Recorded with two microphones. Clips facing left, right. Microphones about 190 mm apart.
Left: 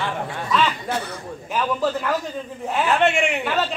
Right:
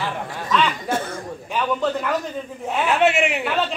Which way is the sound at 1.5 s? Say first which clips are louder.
Even; centre (ahead or behind).